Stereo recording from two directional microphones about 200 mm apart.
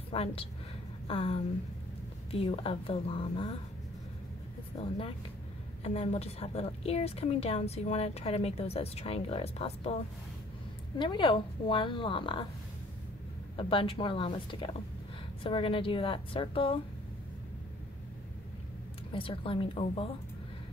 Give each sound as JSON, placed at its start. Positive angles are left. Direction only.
{"t": 0.1, "sound": "a woman's voice", "side_deg": 30}
{"t": 4.7, "sound": "a woman's voice", "side_deg": 30}
{"t": 11.0, "sound": "a woman's voice", "side_deg": 25}
{"t": 13.6, "sound": "a woman's voice", "side_deg": 25}
{"t": 19.1, "sound": "a woman's voice", "side_deg": 25}